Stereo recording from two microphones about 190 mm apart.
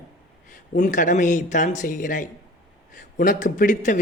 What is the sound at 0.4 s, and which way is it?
Speech, 40° left (ahead or behind).